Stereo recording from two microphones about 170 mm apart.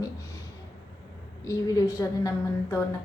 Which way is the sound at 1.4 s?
20° left (ahead or behind).